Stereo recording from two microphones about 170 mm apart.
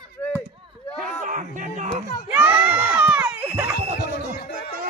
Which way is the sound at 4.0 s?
70° left (ahead or behind).